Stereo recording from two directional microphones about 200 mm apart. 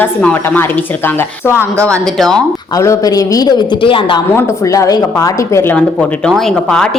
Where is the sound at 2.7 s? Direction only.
15° left (ahead or behind).